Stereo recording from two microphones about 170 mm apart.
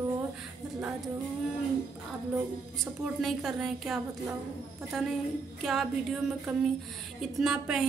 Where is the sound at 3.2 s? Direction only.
Centre (ahead or behind).